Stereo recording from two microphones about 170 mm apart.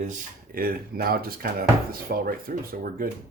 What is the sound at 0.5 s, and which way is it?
Speech, 60° right (ahead or behind).